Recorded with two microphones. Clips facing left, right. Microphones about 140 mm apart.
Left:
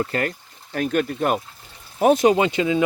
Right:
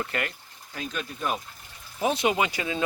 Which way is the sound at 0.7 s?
55° left (ahead or behind).